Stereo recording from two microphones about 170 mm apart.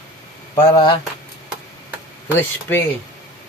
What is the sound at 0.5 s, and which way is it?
Speech, 25° left (ahead or behind).